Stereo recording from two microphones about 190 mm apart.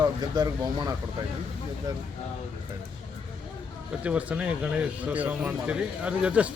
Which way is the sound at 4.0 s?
5° right (ahead or behind).